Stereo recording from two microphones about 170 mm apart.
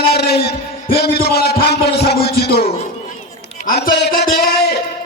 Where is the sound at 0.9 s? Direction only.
70° left (ahead or behind).